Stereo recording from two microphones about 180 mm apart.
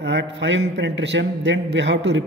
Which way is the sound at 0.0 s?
80° right.